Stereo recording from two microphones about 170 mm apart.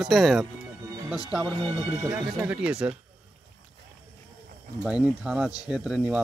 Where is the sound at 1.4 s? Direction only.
30° right (ahead or behind).